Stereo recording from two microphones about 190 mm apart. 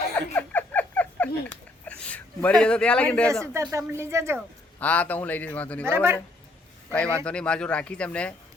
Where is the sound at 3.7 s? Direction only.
15° right (ahead or behind).